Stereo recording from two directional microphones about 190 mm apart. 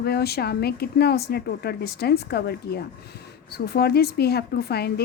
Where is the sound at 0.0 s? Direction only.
55° left (ahead or behind).